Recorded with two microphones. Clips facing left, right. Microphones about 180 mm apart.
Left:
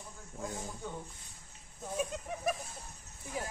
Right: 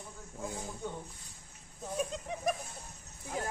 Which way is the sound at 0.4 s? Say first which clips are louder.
Even; centre (ahead or behind).